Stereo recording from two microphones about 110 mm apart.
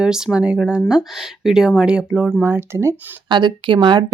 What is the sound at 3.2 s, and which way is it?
Speech, 45° right (ahead or behind).